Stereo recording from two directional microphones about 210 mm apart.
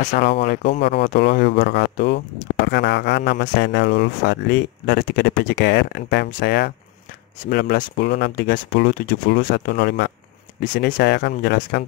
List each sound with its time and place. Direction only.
0.0 s speech: 45° left (ahead or behind)